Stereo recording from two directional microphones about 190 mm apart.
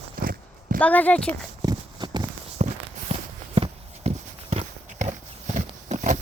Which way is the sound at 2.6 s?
40° right (ahead or behind).